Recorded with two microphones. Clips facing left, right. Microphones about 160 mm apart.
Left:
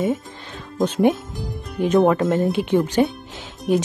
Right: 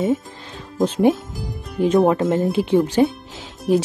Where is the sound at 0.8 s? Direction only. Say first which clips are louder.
Right 1 dB; centre (ahead or behind).